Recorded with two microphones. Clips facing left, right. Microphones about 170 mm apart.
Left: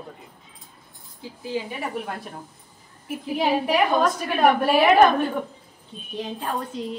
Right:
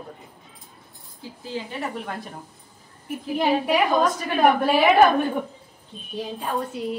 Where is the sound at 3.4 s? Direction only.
5° left (ahead or behind).